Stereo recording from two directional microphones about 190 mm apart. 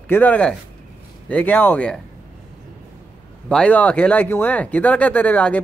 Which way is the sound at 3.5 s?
5° left (ahead or behind).